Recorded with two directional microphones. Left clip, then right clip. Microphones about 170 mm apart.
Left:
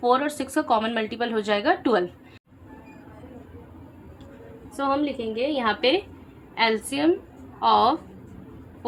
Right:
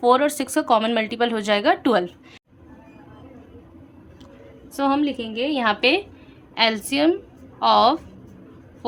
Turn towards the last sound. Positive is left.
turn(degrees=-45)  # may be behind; listen again after turning